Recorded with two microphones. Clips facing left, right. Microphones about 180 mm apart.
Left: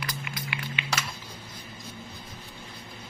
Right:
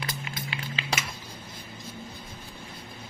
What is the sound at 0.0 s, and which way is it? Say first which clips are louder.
Music: even; 25° right (ahead or behind).